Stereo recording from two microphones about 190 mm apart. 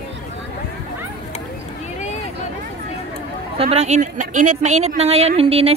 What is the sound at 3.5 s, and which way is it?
A woman's voice, 30° right (ahead or behind).